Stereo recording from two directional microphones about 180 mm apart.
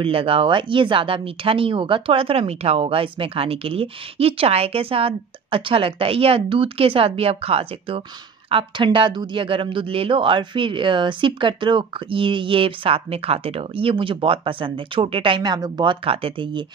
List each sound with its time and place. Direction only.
0.0 s speech: 30° right (ahead or behind)